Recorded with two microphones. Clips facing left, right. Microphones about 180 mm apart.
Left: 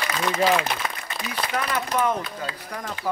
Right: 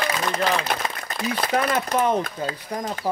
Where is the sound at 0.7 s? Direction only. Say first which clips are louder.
Right 3 dB; 45° right (ahead or behind).